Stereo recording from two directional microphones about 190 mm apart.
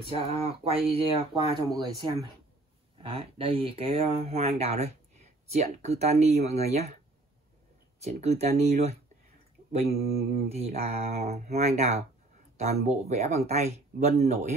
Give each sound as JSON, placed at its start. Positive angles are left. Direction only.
{"t": 0.1, "sound": "speech", "side_deg": -30}
{"t": 3.0, "sound": "speech", "side_deg": -30}
{"t": 8.0, "sound": "speech", "side_deg": -35}
{"t": 10.0, "sound": "mantra", "side_deg": -50}
{"t": 10.5, "sound": "speech", "side_deg": -35}